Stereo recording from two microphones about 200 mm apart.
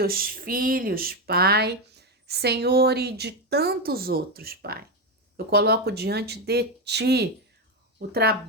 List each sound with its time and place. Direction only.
0.0 s speech: 45° right (ahead or behind)